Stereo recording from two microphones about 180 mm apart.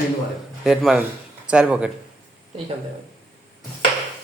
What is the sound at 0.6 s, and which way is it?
Speech, centre (ahead or behind).